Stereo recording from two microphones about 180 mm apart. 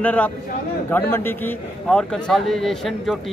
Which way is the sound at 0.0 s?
10° left (ahead or behind).